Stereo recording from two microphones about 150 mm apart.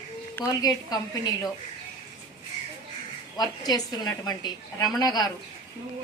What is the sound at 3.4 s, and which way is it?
A woman's voice, 25° left (ahead or behind).